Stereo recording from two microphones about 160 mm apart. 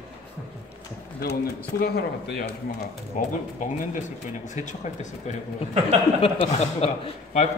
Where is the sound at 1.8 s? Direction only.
85° left.